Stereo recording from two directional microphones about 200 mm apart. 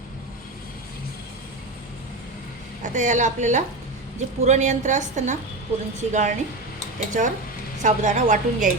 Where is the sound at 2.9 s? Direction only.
40° right (ahead or behind).